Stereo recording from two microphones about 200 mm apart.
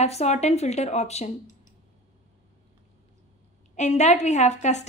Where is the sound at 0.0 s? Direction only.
30° left (ahead or behind).